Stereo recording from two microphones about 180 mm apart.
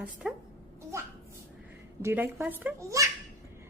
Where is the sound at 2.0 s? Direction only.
15° right (ahead or behind).